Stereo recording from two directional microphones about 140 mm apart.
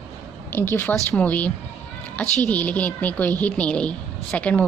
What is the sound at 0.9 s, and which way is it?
Speech, centre (ahead or behind).